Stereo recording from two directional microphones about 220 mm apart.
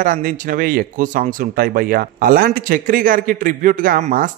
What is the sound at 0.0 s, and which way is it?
Speech, 40° right (ahead or behind).